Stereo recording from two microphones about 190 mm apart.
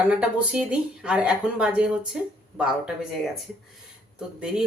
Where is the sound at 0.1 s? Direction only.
5° right (ahead or behind).